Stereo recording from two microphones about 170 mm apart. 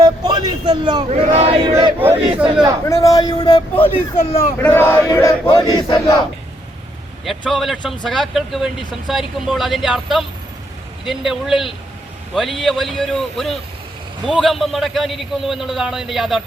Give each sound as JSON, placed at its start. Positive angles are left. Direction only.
{"t": 0.0, "sound": "a sound", "side_deg": -25}
{"t": 1.4, "sound": "battle cry", "side_deg": -35}
{"t": 2.8, "sound": "battle cry", "side_deg": 20}
{"t": 3.9, "sound": "speech", "side_deg": 35}
{"t": 4.5, "sound": "speech", "side_deg": 10}
{"t": 5.0, "sound": "battle cry", "side_deg": 20}
{"t": 7.3, "sound": "a man's voice", "side_deg": 0}